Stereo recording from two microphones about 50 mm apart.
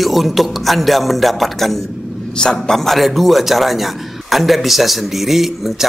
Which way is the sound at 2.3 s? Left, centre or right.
Centre.